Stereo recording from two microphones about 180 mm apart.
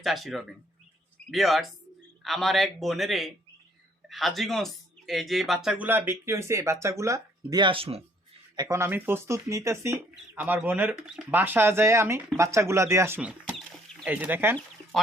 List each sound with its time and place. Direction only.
0.0 s a man's voice: centre (ahead or behind); by 8.0 s 30° right (ahead or behind)
8.5 s speech: 15° right (ahead or behind)
13.6 s a sound: centre (ahead or behind)
14.1 s speech: 10° right (ahead or behind)